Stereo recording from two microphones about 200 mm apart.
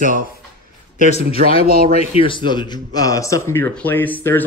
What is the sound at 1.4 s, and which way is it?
Speech, 40° right (ahead or behind).